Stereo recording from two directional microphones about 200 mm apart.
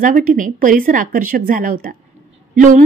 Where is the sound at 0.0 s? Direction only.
40° right (ahead or behind).